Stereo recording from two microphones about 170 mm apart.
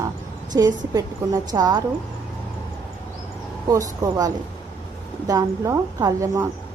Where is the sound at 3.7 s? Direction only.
20° right (ahead or behind).